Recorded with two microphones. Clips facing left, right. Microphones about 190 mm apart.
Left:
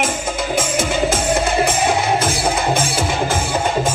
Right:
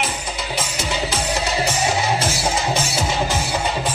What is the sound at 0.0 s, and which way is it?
Music, 50° left (ahead or behind).